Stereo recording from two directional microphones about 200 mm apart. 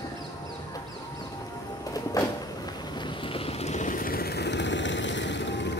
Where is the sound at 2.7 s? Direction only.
20° left (ahead or behind); by 5.7 s 60° left (ahead or behind).